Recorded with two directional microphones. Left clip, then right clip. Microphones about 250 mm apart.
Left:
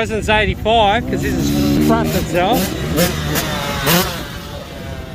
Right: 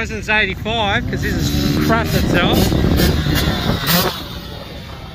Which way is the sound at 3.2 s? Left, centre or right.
Centre.